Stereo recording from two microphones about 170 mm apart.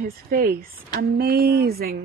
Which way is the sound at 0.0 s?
60° right (ahead or behind).